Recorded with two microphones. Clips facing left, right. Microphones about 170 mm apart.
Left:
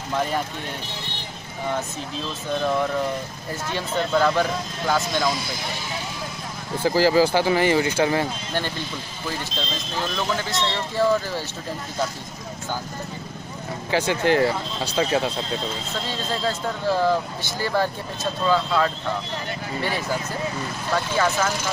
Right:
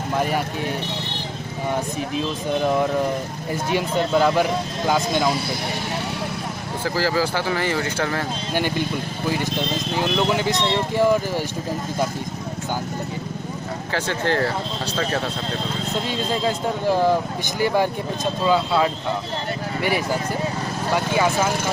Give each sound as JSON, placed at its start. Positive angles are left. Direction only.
{"t": 3.7, "sound": "speech", "side_deg": -15}
{"t": 7.0, "sound": "speech", "side_deg": 15}
{"t": 8.5, "sound": "speech", "side_deg": -15}
{"t": 13.9, "sound": "speech", "side_deg": 15}
{"t": 16.3, "sound": "speech", "side_deg": -15}
{"t": 20.9, "sound": "speech", "side_deg": -15}